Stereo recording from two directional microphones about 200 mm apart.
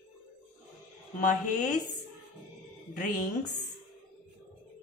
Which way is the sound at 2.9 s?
40° left (ahead or behind).